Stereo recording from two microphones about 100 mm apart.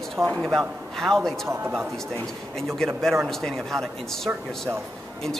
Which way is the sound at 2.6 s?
5° left (ahead or behind).